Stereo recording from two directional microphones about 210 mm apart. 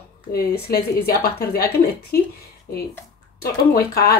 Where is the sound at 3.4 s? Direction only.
45° left (ahead or behind).